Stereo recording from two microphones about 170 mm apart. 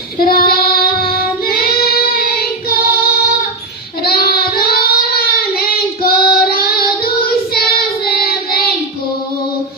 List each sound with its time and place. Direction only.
0.2 s child singing: 60° left (ahead or behind)